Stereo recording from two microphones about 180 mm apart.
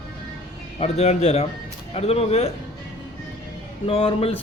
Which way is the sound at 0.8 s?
35° left (ahead or behind).